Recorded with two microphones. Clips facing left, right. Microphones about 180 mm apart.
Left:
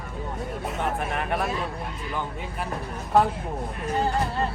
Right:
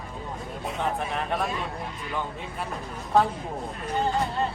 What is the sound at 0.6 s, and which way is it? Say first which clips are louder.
Speech: even; 5° left (ahead or behind).